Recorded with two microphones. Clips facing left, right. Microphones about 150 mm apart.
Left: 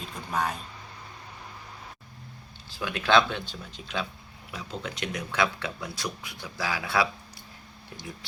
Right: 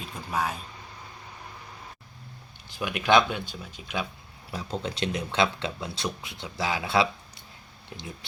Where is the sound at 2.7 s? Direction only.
20° right (ahead or behind).